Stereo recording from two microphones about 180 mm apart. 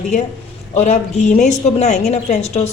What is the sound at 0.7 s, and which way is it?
A woman's voice, 40° left (ahead or behind).